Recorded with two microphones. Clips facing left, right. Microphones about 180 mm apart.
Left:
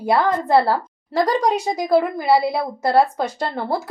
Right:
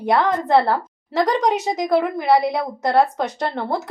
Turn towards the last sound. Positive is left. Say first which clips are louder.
# even
turn(degrees=0)  # may be behind; listen again after turning